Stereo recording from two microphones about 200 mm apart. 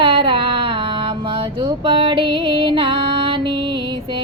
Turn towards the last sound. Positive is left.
turn(degrees=-25)  # may be behind; listen again after turning